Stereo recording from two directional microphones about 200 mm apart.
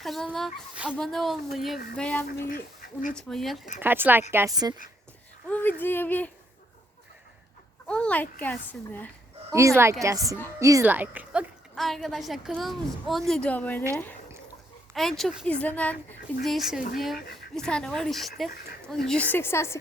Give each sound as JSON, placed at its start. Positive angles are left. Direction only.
{"t": 0.0, "sound": "a woman's voice", "side_deg": 0}
{"t": 2.5, "sound": "speech", "side_deg": 45}
{"t": 3.2, "sound": "a woman's voice", "side_deg": 0}
{"t": 3.8, "sound": "speech", "side_deg": -10}
{"t": 5.5, "sound": "speech", "side_deg": 10}
{"t": 7.9, "sound": "a child's voice", "side_deg": 5}
{"t": 9.5, "sound": "a woman's voice", "side_deg": -15}